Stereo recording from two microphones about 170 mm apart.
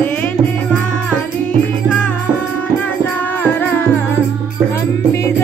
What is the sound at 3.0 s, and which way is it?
Music, 10° left (ahead or behind).